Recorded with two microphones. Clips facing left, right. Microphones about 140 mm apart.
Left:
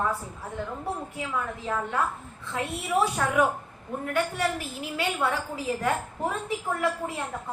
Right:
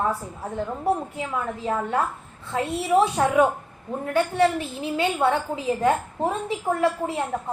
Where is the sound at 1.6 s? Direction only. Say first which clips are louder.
Right 5 dB; 25° right (ahead or behind).